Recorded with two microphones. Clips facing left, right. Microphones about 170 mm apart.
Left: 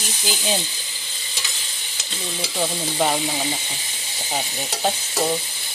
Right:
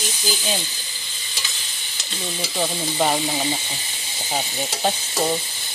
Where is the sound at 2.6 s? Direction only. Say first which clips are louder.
Even; 5° right (ahead or behind).